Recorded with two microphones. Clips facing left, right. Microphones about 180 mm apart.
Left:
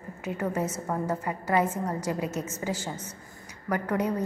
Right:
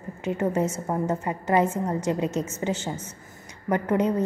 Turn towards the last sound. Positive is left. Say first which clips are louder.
# right 4 dB
turn(degrees=-25)  # may be behind; listen again after turning